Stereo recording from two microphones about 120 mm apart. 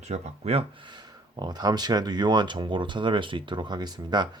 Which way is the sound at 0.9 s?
35° right (ahead or behind).